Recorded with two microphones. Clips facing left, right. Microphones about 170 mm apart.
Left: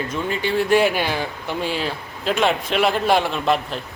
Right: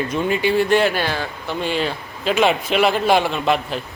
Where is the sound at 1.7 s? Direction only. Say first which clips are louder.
Right 3 dB; 5° left (ahead or behind).